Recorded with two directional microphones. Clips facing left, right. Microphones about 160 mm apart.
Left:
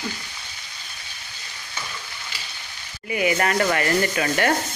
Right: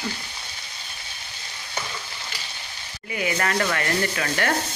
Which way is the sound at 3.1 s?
10° left (ahead or behind).